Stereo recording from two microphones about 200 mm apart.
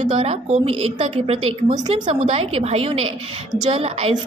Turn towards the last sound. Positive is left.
turn(degrees=-30)  # may be behind; listen again after turning